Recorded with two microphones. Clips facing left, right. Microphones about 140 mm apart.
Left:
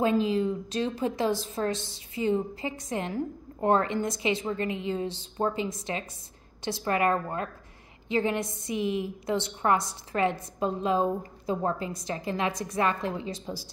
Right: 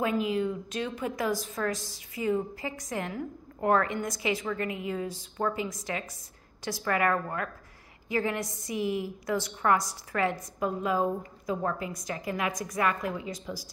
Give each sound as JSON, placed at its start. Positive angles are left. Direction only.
{"t": 0.0, "sound": "a woman's voice", "side_deg": 30}